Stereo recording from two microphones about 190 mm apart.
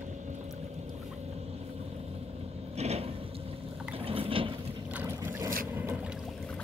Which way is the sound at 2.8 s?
35° right (ahead or behind).